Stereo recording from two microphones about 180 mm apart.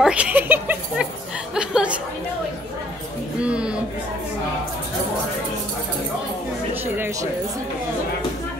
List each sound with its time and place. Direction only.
0.0 s a sound: 5° right (ahead or behind)
1.5 s a woman's voice: 5° right (ahead or behind)
3.4 s a woman's voice: 5° right (ahead or behind)
6.7 s speech: 10° right (ahead or behind)